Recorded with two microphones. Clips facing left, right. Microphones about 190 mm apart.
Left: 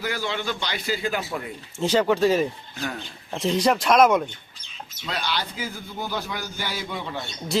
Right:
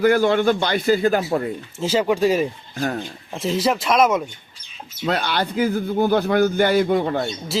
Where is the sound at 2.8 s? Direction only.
50° right (ahead or behind).